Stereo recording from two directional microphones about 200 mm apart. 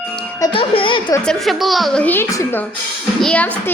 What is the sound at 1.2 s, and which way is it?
A child's voice, centre (ahead or behind).